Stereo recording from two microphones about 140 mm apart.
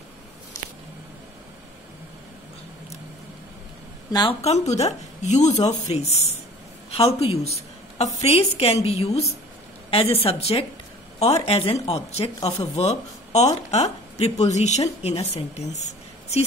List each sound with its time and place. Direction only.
4.1 s speech: 30° left (ahead or behind)
4.4 s a woman's voice: 50° left (ahead or behind)